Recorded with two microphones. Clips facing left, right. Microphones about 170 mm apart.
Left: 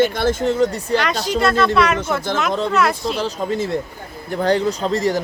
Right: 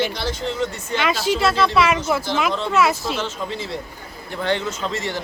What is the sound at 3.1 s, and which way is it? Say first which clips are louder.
Speech: left 5 dB; 40° left (ahead or behind).